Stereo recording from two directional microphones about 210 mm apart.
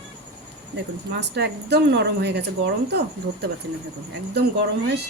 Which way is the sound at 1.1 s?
50° right (ahead or behind).